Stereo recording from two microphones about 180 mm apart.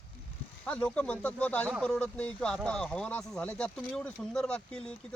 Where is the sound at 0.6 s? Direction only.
5° left (ahead or behind).